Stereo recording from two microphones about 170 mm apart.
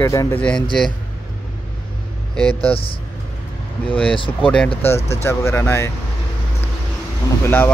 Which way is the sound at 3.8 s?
5° left (ahead or behind).